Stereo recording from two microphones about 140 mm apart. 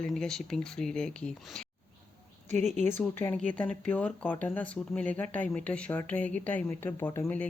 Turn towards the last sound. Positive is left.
turn(degrees=15)  # may be behind; listen again after turning